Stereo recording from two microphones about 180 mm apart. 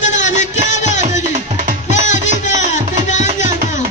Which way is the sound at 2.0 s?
40° left (ahead or behind).